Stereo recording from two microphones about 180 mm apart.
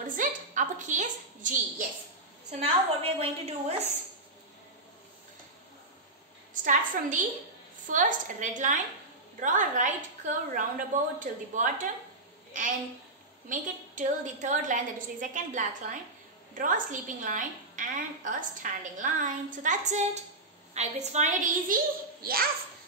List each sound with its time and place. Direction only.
0.0 s a sound: 50° right (ahead or behind)
2.6 s a woman's voice: 35° right (ahead or behind)
6.5 s a woman's voice: 45° right (ahead or behind)
13.5 s a woman's voice: 45° right (ahead or behind)
22.2 s a child's voice: 55° right (ahead or behind)